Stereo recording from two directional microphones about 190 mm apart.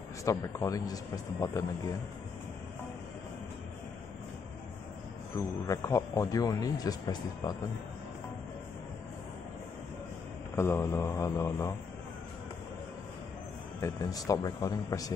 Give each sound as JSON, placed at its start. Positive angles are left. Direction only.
{"t": 0.2, "sound": "a man's voice", "side_deg": 15}
{"t": 5.7, "sound": "speech", "side_deg": 15}
{"t": 10.5, "sound": "a man's voice", "side_deg": 15}
{"t": 13.7, "sound": "speech", "side_deg": 15}